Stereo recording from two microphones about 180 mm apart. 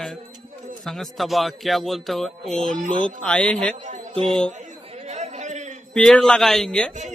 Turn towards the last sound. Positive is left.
turn(degrees=5)  # may be behind; listen again after turning